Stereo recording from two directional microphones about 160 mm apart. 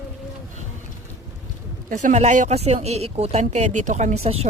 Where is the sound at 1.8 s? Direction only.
50° right (ahead or behind).